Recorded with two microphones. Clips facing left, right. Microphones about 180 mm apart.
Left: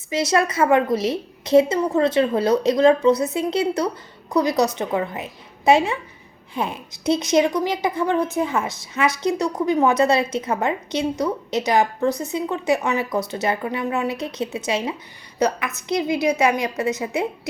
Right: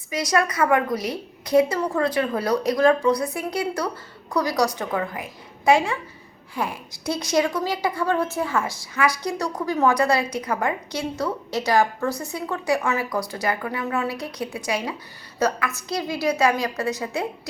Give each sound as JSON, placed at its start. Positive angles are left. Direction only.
{"t": 0.1, "sound": "a woman's voice", "side_deg": 25}